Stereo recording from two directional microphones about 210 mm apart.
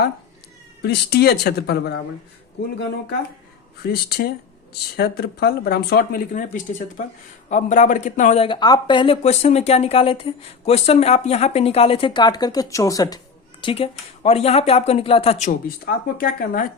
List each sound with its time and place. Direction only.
0.8 s speech: 50° left (ahead or behind)
3.8 s speech: 50° left (ahead or behind)
8.4 s speech: 20° left (ahead or behind); by 16.6 s 45° left (ahead or behind)